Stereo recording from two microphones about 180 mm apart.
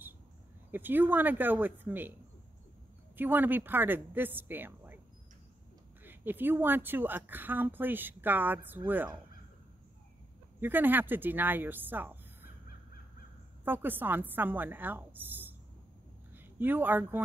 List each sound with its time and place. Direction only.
0.7 s speech: 10° right (ahead or behind)
3.2 s speech: 10° right (ahead or behind)
6.0 s speech: 10° right (ahead or behind)
10.6 s speech: 10° right (ahead or behind)
13.7 s speech: 10° right (ahead or behind)